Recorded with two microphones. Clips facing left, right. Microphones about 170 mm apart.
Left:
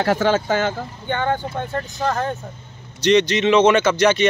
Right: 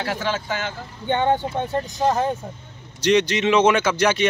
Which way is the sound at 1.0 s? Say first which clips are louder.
Right 3 dB; 25° right (ahead or behind).